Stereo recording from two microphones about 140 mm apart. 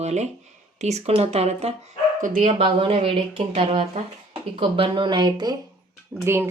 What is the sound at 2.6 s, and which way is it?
Speech, 40° right (ahead or behind).